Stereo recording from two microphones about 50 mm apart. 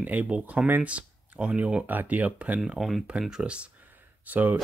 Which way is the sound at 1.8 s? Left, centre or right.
Right.